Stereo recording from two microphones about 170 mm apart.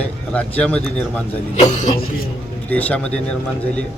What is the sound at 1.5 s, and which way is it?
Speech, 45° left (ahead or behind).